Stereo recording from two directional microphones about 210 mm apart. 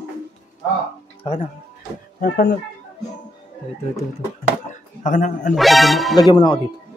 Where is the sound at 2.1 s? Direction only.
45° left (ahead or behind).